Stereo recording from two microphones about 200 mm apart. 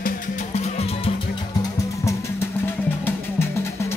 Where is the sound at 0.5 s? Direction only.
30° left (ahead or behind).